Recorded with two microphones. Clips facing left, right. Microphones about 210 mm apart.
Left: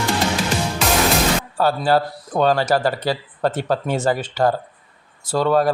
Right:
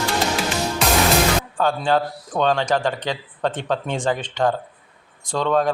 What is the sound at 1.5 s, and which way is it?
A man's voice, 5° left (ahead or behind).